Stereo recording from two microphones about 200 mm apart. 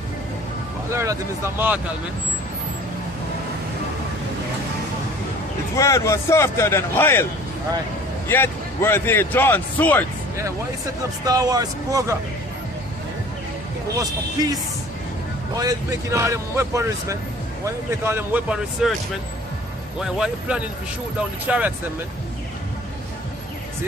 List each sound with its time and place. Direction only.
0.9 s speech: 15° right (ahead or behind)
5.8 s speech: 15° left (ahead or behind)
8.3 s speech: 10° left (ahead or behind)
11.2 s speech: 20° right (ahead or behind)
13.9 s a man's voice: 20° right (ahead or behind)
15.6 s speech: 15° right (ahead or behind)
20.0 s speech: 5° right (ahead or behind)